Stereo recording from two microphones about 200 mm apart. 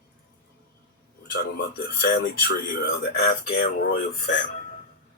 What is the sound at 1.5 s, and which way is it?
Speech, 55° left (ahead or behind).